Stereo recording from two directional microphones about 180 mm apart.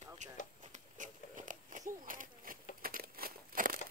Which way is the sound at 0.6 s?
40° right (ahead or behind).